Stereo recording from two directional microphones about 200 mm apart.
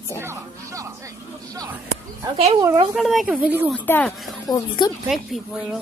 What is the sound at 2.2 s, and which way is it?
Speech, 30° right (ahead or behind).